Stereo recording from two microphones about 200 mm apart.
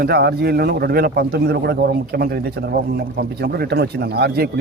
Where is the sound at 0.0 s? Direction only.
55° right (ahead or behind).